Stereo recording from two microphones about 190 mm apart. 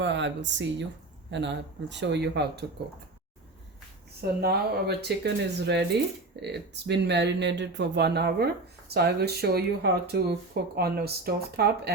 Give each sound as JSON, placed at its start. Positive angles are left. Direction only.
{"t": 0.0, "sound": "speech", "side_deg": -70}
{"t": 4.4, "sound": "speech", "side_deg": -55}